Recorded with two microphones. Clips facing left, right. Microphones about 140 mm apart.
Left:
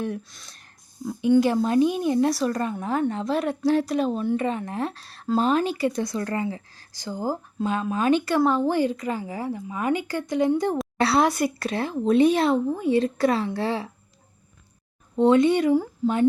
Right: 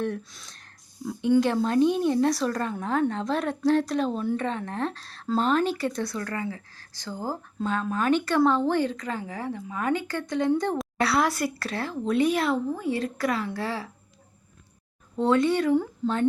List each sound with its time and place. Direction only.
0.0 s speech: 10° left (ahead or behind)
11.0 s speech: 25° left (ahead or behind)
15.1 s a woman's voice: 20° left (ahead or behind)